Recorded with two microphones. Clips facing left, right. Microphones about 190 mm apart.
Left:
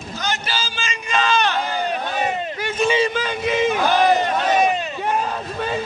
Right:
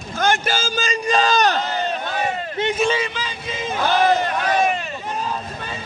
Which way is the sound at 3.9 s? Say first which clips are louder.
Right 3 dB; 20° left (ahead or behind).